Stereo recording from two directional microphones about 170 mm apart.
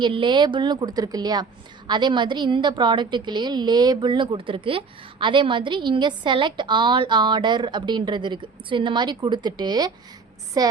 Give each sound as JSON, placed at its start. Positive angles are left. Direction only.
{"t": 0.0, "sound": "a woman's voice", "side_deg": -30}